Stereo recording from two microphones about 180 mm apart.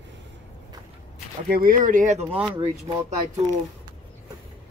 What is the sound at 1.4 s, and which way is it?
Speech, 55° right (ahead or behind).